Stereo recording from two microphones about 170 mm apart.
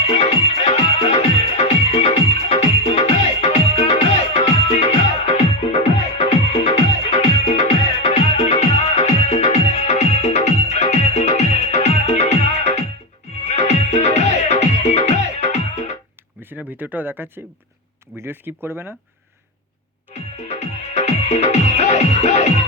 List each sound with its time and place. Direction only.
0.1 s music: 35° left (ahead or behind)
16.4 s a sound: 10° right (ahead or behind)
18.2 s speech: 10° right (ahead or behind)
20.5 s music: 40° left (ahead or behind)